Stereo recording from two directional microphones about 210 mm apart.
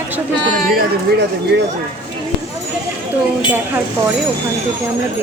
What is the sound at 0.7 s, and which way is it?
Speech, 50° right (ahead or behind).